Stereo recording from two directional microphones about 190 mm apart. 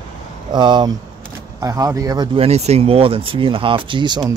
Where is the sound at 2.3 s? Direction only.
35° right (ahead or behind).